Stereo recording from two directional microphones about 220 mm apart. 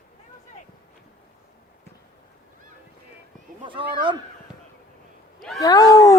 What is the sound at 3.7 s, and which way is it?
Speech, 20° right (ahead or behind).